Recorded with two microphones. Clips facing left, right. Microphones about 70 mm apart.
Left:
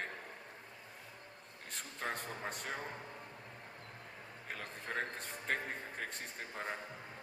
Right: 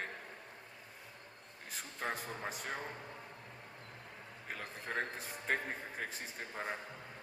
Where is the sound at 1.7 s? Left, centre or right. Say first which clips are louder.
Right 1 dB; centre.